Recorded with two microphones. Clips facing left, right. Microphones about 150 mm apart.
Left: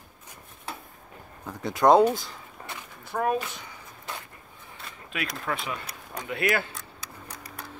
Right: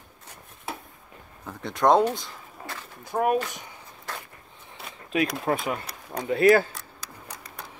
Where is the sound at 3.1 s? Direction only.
15° right (ahead or behind).